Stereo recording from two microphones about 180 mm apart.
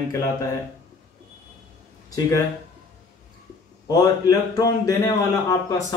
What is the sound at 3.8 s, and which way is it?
A man's voice, 20° left (ahead or behind).